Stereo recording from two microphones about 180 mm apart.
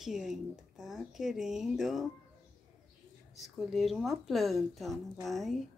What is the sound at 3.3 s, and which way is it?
Speech, centre (ahead or behind).